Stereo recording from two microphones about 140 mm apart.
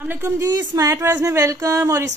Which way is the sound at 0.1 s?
20° right (ahead or behind).